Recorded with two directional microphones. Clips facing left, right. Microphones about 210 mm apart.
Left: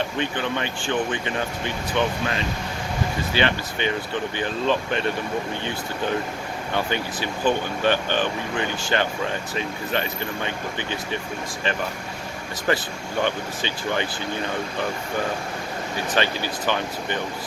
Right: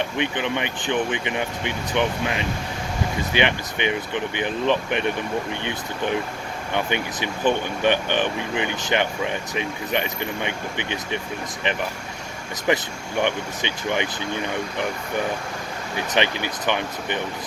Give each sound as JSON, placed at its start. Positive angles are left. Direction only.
{"t": 0.0, "sound": "speech", "side_deg": -20}
{"t": 6.7, "sound": "speech", "side_deg": -20}
{"t": 12.7, "sound": "speech", "side_deg": -15}
{"t": 16.0, "sound": "speech", "side_deg": -20}